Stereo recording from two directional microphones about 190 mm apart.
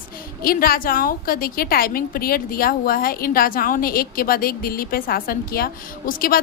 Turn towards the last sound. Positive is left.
turn(degrees=50)  # may be behind; listen again after turning